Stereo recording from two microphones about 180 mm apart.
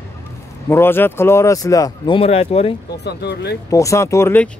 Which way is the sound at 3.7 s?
15° left (ahead or behind).